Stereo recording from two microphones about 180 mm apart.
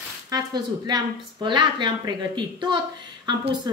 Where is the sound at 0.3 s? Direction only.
25° right (ahead or behind).